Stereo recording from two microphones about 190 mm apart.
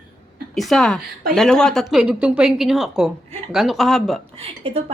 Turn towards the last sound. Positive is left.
turn(degrees=-30)  # may be behind; listen again after turning